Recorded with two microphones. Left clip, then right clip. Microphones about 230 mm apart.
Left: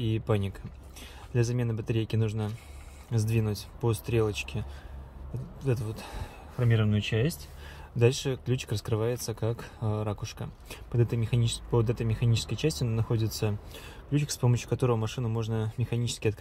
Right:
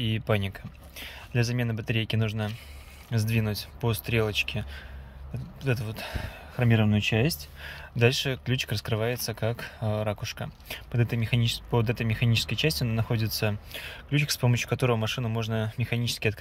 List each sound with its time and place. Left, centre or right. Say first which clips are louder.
0.0 s speech: right 2 dB; centre
6.6 s speech: right 4 dB; centre
8.0 s speech: right 2 dB; centre